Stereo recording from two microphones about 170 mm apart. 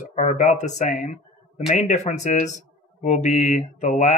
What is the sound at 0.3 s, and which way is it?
Speech, 45° left (ahead or behind).